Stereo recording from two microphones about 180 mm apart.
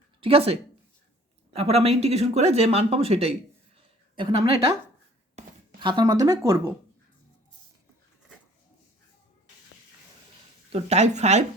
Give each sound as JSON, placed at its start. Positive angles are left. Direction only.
{"t": 0.2, "sound": "a woman's voice", "side_deg": -30}
{"t": 5.4, "sound": "a sound", "side_deg": -40}
{"t": 5.8, "sound": "speech", "side_deg": -25}
{"t": 10.7, "sound": "speech", "side_deg": -35}